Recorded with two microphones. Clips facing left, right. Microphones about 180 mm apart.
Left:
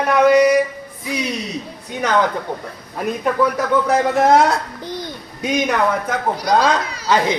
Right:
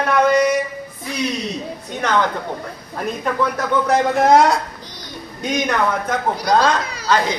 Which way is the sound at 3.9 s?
5° left (ahead or behind).